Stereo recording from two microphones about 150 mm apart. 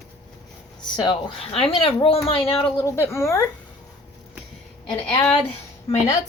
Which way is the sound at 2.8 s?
20° left (ahead or behind).